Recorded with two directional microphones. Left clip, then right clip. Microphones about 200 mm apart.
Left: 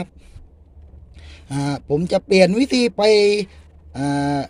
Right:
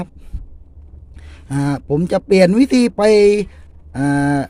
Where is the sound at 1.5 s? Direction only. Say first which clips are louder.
Right 2 dB; 15° right (ahead or behind).